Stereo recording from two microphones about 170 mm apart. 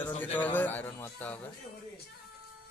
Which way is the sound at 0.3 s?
10° left (ahead or behind).